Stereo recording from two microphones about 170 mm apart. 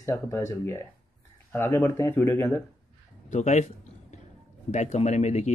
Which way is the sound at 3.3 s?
40° left (ahead or behind).